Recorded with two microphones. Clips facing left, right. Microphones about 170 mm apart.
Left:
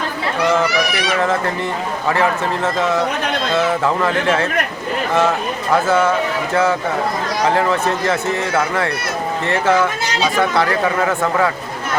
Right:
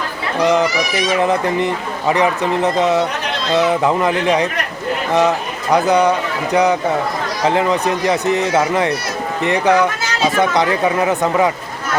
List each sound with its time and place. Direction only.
0.4 s speech: 20° right (ahead or behind)
5.7 s speech: 15° right (ahead or behind)